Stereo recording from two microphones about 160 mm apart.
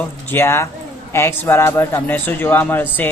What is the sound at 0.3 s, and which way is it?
A man's voice, 15° left (ahead or behind).